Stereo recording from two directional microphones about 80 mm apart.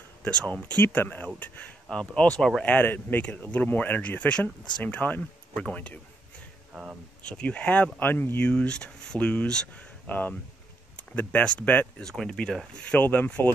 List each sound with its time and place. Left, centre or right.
0.2 s speech: centre
6.7 s speech: centre
7.2 s speech: centre
12.0 s speech: centre
12.9 s speech: centre